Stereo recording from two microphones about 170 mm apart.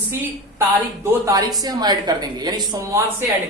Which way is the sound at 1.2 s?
20° right (ahead or behind).